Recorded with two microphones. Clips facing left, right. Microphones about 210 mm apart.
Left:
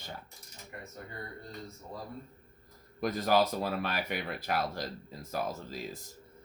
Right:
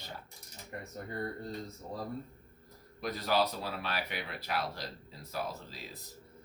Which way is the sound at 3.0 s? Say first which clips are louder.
Left 4 dB; 50° left (ahead or behind).